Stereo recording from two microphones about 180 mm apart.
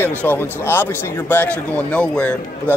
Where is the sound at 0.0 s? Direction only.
10° left (ahead or behind).